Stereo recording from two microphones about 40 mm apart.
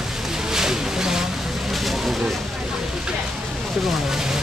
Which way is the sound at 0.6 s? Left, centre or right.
Centre.